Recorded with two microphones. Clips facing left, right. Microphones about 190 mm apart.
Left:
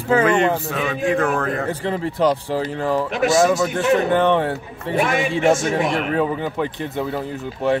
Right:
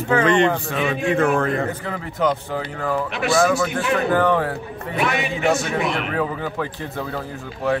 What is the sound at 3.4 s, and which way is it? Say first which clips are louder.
A man's voice: left 2 dB; 20° left (ahead or behind).